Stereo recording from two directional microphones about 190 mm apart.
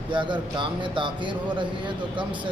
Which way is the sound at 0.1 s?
25° right (ahead or behind).